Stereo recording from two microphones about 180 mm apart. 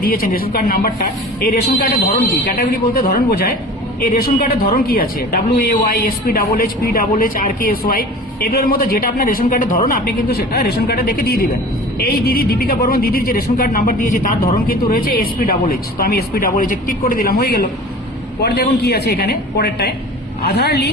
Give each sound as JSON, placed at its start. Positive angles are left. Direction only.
{"t": 0.0, "sound": "speech", "side_deg": 55}
{"t": 2.6, "sound": "speech", "side_deg": 55}